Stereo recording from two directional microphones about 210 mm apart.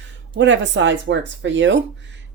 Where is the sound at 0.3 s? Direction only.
60° right (ahead or behind).